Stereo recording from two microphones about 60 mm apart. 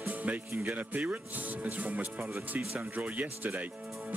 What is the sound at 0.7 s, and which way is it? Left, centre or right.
Speech, right.